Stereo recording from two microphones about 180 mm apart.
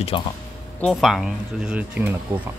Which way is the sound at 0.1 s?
30° left (ahead or behind).